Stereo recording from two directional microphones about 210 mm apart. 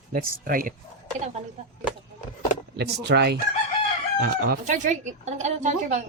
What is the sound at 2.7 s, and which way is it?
Speech, 50° right (ahead or behind).